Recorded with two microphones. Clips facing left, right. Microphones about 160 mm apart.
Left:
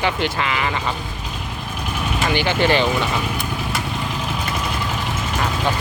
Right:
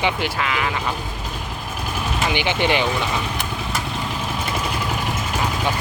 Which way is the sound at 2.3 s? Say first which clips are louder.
Left 3 dB; 15° right (ahead or behind).